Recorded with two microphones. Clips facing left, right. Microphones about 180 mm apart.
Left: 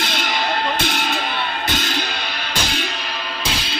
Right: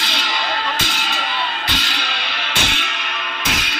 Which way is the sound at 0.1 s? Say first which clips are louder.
Left 2 dB; 50° left (ahead or behind).